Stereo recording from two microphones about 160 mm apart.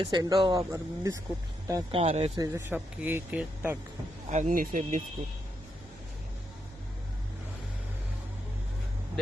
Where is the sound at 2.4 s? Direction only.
15° right (ahead or behind).